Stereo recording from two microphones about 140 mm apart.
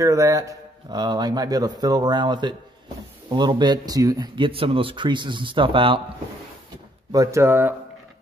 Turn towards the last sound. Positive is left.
turn(degrees=-15)  # may be behind; listen again after turning